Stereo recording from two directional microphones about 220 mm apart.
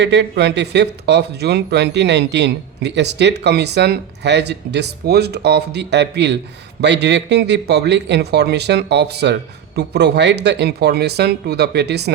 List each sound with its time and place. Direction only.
0.0 s speech: 50° right (ahead or behind)